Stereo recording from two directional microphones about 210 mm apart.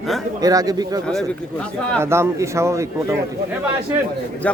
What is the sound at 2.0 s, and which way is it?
Speech, 10° right (ahead or behind).